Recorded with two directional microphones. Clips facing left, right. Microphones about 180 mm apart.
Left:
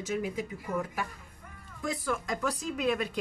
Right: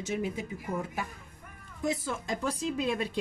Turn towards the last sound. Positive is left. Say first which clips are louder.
# left 1 dB
turn(degrees=-25)  # may be behind; listen again after turning